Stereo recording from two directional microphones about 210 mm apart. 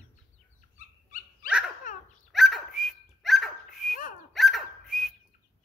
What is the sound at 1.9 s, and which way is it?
Dog, 40° left (ahead or behind).